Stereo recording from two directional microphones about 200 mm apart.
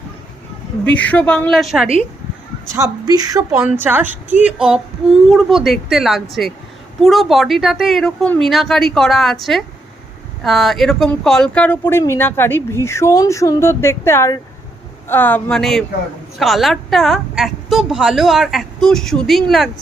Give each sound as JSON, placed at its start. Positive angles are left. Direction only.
{"t": 0.9, "sound": "a woman's voice", "side_deg": 5}
{"t": 2.7, "sound": "a woman's voice", "side_deg": -15}